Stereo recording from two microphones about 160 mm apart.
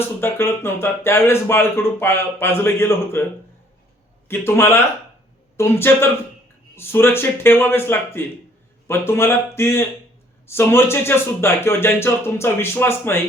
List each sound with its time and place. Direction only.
0.2 s speech: 15° left (ahead or behind)
4.3 s speech: 15° left (ahead or behind)